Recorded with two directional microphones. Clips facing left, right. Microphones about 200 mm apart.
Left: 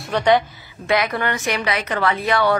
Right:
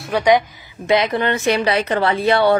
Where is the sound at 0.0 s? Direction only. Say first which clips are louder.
Right 2 dB; 10° right (ahead or behind).